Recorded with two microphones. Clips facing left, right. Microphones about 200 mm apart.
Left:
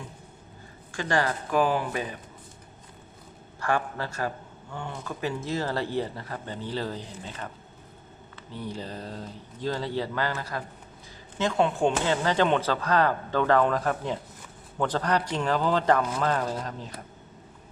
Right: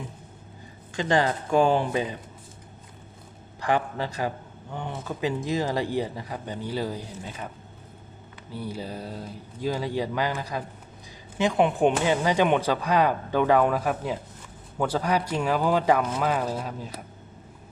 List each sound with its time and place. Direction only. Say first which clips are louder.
0.9 s speech: right 3 dB; 20° right (ahead or behind)
3.6 s speech: right 2 dB; 20° right (ahead or behind)
8.5 s speech: right 2 dB; 10° right (ahead or behind)